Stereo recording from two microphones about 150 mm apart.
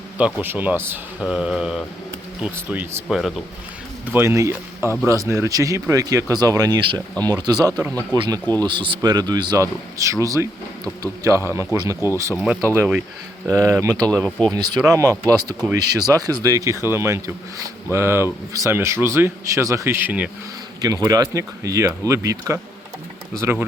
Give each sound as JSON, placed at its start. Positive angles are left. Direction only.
{"t": 0.2, "sound": "speech", "side_deg": -10}
{"t": 1.2, "sound": "mantra", "side_deg": -5}
{"t": 2.4, "sound": "speech", "side_deg": -10}
{"t": 4.8, "sound": "speech", "side_deg": 20}
{"t": 5.2, "sound": "speech", "side_deg": -20}
{"t": 14.3, "sound": "mantra", "side_deg": 5}
{"t": 14.5, "sound": "speech", "side_deg": -30}
{"t": 20.8, "sound": "speech", "side_deg": -25}